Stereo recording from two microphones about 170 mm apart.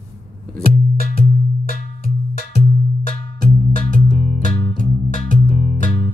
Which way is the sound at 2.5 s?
45° left (ahead or behind).